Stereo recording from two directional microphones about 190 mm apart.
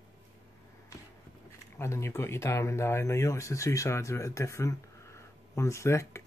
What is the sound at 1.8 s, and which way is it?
Speech, 15° left (ahead or behind).